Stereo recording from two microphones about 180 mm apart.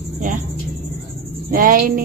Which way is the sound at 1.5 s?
50° right (ahead or behind).